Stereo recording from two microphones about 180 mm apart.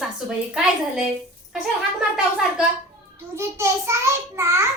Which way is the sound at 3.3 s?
15° right (ahead or behind).